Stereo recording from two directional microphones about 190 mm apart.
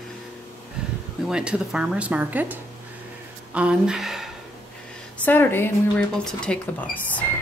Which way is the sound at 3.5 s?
5° right (ahead or behind).